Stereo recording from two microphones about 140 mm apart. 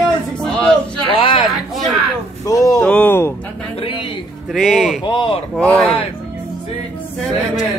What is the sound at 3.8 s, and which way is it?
Speech, 40° left (ahead or behind).